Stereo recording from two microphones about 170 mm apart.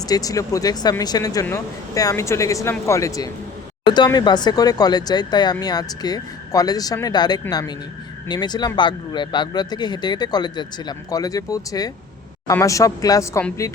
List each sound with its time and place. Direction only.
0.1 s speech: 20° left (ahead or behind)